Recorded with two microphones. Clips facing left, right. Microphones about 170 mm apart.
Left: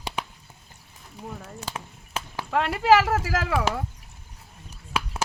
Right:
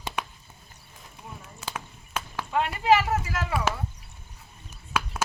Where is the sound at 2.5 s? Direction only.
90° left.